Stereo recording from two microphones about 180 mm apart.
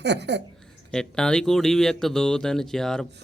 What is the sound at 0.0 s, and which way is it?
Speech, 70° right (ahead or behind).